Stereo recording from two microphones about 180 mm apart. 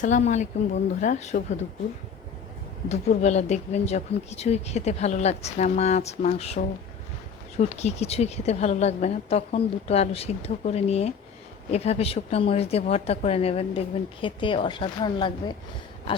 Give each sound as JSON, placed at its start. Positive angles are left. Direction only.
{"t": 0.0, "sound": "speech", "side_deg": 40}
{"t": 2.9, "sound": "a woman's voice", "side_deg": 40}
{"t": 7.6, "sound": "a woman's voice", "side_deg": 35}